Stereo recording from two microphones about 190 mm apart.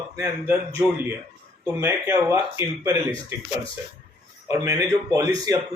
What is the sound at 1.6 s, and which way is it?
Speech, 15° right (ahead or behind).